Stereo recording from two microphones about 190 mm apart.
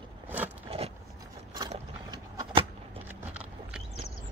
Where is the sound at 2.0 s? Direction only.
20° right (ahead or behind).